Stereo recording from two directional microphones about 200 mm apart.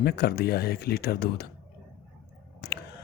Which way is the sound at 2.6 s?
50° left (ahead or behind).